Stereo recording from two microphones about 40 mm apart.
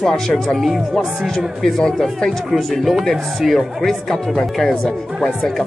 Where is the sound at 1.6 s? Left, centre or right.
Centre.